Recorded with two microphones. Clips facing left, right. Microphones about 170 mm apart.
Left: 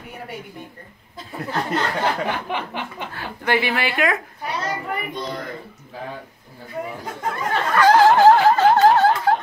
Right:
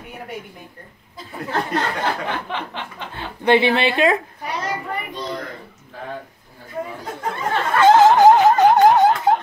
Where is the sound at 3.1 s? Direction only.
25° right (ahead or behind).